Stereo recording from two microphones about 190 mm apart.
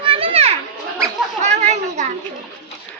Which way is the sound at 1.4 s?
35° right (ahead or behind).